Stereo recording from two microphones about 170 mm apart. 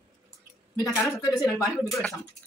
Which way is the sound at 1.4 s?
Centre (ahead or behind).